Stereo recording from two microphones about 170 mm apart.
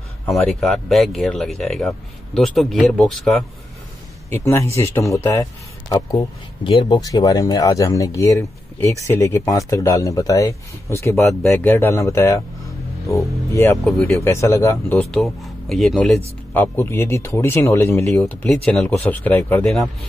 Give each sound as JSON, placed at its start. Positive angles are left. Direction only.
{"t": 0.3, "sound": "speech", "side_deg": 0}
{"t": 4.3, "sound": "speech", "side_deg": 15}
{"t": 13.8, "sound": "speech", "side_deg": 0}
{"t": 14.2, "sound": "speech", "side_deg": 15}
{"t": 15.0, "sound": "speech", "side_deg": 0}
{"t": 16.5, "sound": "speech", "side_deg": 15}